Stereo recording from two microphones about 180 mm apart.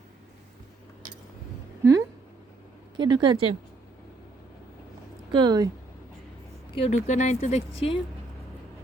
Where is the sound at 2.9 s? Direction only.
25° right (ahead or behind).